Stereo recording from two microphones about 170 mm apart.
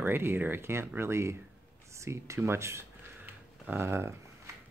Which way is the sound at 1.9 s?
15° right (ahead or behind).